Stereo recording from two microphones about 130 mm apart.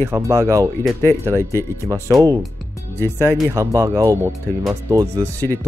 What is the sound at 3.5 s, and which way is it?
Speech, 25° right (ahead or behind).